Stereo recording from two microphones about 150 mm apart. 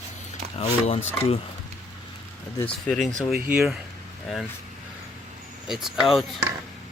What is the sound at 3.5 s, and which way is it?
Speech, 5° right (ahead or behind).